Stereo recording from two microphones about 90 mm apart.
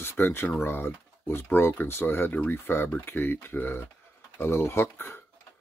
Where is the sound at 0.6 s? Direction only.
25° left (ahead or behind).